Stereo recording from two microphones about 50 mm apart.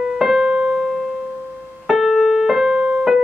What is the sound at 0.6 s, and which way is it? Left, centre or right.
Piano, centre.